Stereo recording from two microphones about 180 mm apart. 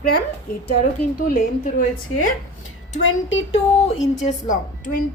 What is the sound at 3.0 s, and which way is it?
Speech, 90° left.